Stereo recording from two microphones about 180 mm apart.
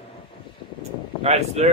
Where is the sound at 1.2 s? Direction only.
35° right (ahead or behind).